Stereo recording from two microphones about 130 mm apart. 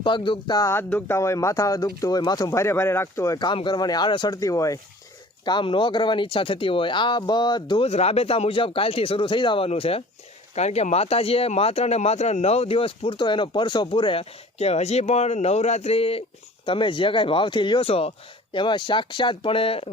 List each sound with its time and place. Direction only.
0.0 s speech: 40° left (ahead or behind)
0.7 s speech: 15° left (ahead or behind)
5.5 s speech: 35° left (ahead or behind)
7.9 s speech: 55° left (ahead or behind)